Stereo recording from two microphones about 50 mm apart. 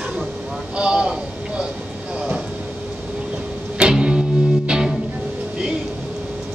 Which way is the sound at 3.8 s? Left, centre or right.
Centre.